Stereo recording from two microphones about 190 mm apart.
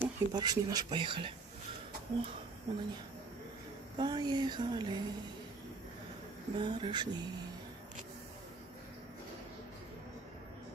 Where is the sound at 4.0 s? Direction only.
20° right (ahead or behind).